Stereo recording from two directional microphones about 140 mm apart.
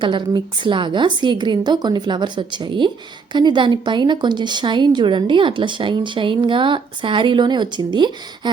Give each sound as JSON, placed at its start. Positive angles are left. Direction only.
{"t": 0.0, "sound": "a woman's voice", "side_deg": -35}